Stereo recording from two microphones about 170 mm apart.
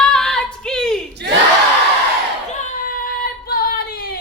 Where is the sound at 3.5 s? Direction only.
60° left (ahead or behind).